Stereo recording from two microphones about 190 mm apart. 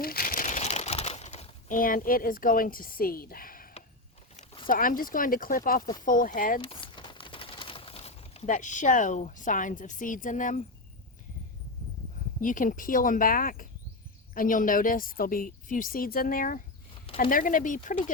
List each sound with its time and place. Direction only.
0.0 s crumpling: 50° left (ahead or behind)
4.7 s a woman's voice: 45° left (ahead or behind)
6.6 s speech: 25° left (ahead or behind); by 10.6 s 40° left (ahead or behind)
12.4 s a woman's voice: 45° left (ahead or behind)